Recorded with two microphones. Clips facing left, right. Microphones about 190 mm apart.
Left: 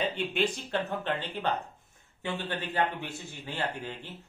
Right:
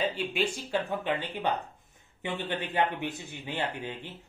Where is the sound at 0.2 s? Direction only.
5° right (ahead or behind).